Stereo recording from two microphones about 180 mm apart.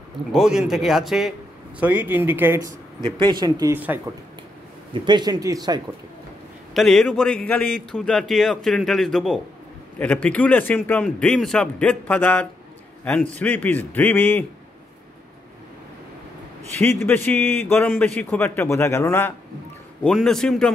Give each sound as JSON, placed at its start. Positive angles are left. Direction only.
{"t": 0.3, "sound": "a man's voice", "side_deg": 0}
{"t": 3.0, "sound": "speech", "side_deg": -25}
{"t": 4.9, "sound": "speech", "side_deg": -25}
{"t": 6.7, "sound": "a man's voice", "side_deg": 0}
{"t": 16.7, "sound": "a man's voice", "side_deg": 15}
{"t": 20.0, "sound": "a man's voice", "side_deg": 5}